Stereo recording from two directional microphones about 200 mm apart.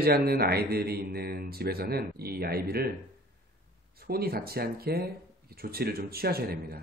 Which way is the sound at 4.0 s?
50° right (ahead or behind).